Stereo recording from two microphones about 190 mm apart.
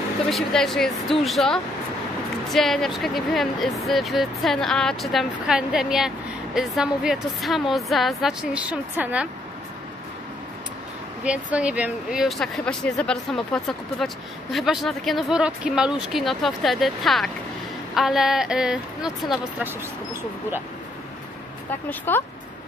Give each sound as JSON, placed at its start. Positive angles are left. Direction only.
{"t": 0.3, "sound": "speech", "side_deg": 0}
{"t": 11.2, "sound": "speech", "side_deg": -5}
{"t": 21.6, "sound": "speech", "side_deg": 10}